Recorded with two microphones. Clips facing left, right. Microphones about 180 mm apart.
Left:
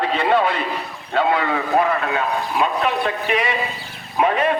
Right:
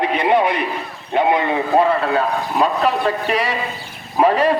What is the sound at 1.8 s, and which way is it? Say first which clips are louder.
A man's voice: right 4 dB; 35° right (ahead or behind).